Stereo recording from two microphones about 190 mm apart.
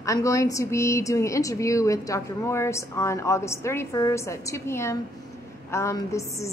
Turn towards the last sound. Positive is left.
turn(degrees=15)  # may be behind; listen again after turning